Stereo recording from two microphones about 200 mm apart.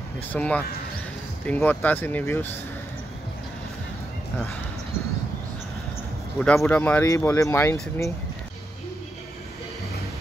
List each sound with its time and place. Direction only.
0.3 s speech: 10° left (ahead or behind)
6.4 s speech: 5° left (ahead or behind)